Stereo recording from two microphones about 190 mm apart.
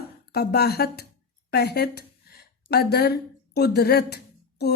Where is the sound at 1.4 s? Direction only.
60° left (ahead or behind).